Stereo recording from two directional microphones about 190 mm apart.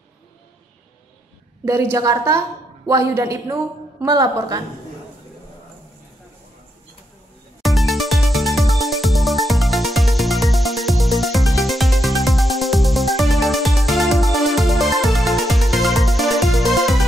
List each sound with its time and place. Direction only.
1.6 s a woman's voice: 15° right (ahead or behind)
7.6 s music: centre (ahead or behind)